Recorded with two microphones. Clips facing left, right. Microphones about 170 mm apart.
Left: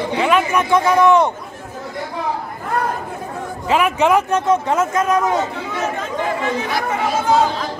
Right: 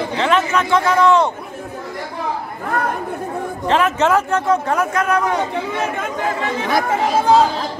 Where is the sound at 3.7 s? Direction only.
10° left (ahead or behind).